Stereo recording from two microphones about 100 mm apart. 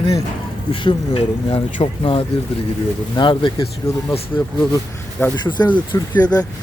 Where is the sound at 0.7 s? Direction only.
60° left (ahead or behind).